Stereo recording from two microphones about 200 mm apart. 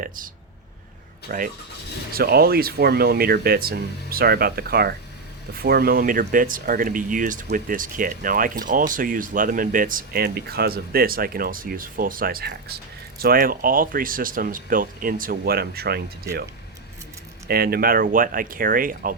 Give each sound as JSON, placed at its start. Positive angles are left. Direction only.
{"t": 1.3, "sound": "speech", "side_deg": -45}
{"t": 16.3, "sound": "speech", "side_deg": -15}
{"t": 17.5, "sound": "speech", "side_deg": -50}